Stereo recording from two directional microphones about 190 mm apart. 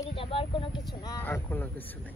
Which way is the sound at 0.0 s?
30° left (ahead or behind).